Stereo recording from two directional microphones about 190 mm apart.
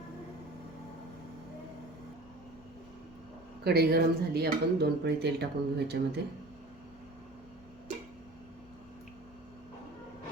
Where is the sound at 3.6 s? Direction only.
55° right (ahead or behind).